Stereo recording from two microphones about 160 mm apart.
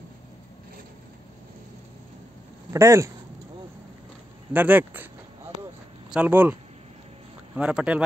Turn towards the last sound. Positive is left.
turn(degrees=-10)  # may be behind; listen again after turning